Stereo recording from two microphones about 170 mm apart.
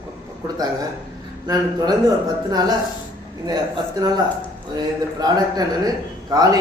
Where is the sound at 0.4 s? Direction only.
20° right (ahead or behind).